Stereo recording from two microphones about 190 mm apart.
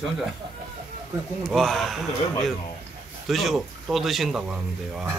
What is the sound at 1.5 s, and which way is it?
Speech, centre (ahead or behind).